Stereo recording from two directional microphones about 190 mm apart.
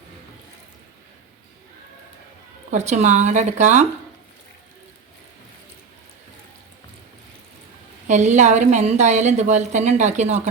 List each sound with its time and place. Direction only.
2.6 s a woman's voice: 35° right (ahead or behind)
8.0 s a woman's voice: 40° right (ahead or behind)